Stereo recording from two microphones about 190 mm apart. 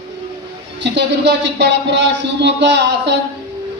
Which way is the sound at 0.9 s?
70° right (ahead or behind).